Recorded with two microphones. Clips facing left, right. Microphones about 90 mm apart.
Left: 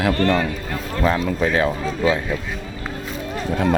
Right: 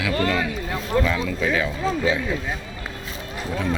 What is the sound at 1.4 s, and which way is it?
Speech, 40° left (ahead or behind).